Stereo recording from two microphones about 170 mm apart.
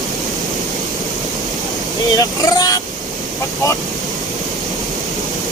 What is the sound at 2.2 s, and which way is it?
Vehicle, 20° left (ahead or behind).